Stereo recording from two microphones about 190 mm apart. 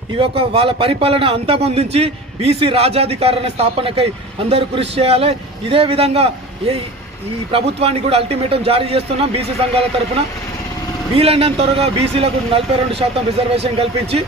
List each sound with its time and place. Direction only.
0.2 s a man's voice: 30° right (ahead or behind)
7.8 s a man's voice: 30° right (ahead or behind)